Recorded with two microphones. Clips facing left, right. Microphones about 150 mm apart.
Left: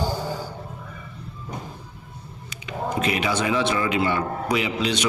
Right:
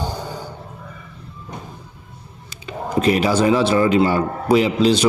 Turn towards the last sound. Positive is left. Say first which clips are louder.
# right 8 dB
turn(degrees=-35)  # may be behind; listen again after turning